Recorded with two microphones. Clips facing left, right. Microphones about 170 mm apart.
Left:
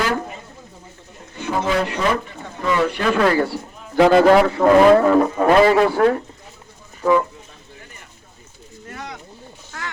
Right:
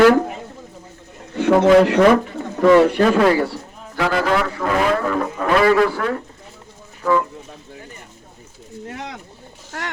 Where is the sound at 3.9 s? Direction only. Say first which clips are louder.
Left 7 dB; 25° left (ahead or behind).